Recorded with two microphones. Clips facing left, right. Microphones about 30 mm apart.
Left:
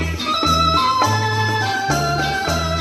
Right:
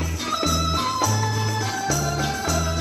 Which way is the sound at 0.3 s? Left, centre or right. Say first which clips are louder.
Left 8 dB; left.